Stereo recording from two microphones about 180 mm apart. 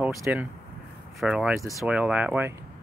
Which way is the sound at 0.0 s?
5° right (ahead or behind).